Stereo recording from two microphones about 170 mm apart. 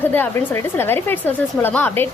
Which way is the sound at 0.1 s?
15° left (ahead or behind).